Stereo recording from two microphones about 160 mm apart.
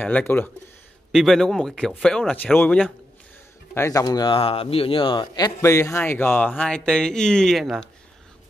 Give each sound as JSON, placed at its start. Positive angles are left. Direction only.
{"t": 0.0, "sound": "speech", "side_deg": 10}